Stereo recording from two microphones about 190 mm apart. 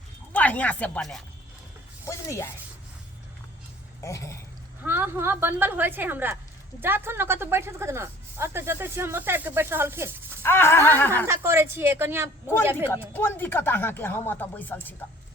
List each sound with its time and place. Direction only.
0.3 s speech: 10° left (ahead or behind)
2.0 s speech: 15° left (ahead or behind)
4.0 s speech: 15° left (ahead or behind)
4.8 s speech: 10° right (ahead or behind)
10.4 s speech: 10° left (ahead or behind)
11.3 s speech: 15° right (ahead or behind)
12.9 s speech: 10° left (ahead or behind)